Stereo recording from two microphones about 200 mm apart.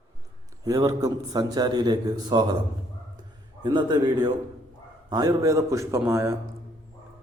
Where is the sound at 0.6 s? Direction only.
15° right (ahead or behind).